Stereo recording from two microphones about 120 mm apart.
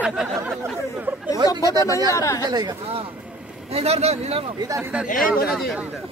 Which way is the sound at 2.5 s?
35° right (ahead or behind).